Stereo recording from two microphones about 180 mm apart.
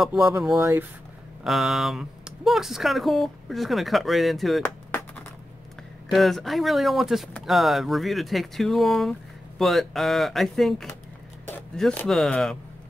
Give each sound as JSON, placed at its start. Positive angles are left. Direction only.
{"t": 0.0, "sound": "speech", "side_deg": 0}
{"t": 0.5, "sound": "speech", "side_deg": -15}
{"t": 1.4, "sound": "speech", "side_deg": 0}
{"t": 4.6, "sound": "a sound", "side_deg": 10}
{"t": 6.0, "sound": "speech", "side_deg": 0}